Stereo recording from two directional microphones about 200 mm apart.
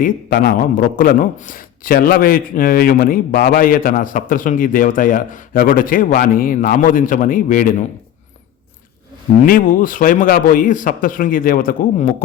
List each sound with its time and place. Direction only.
0.0 s a man's voice: 45° left (ahead or behind)
9.4 s a man's voice: 45° left (ahead or behind)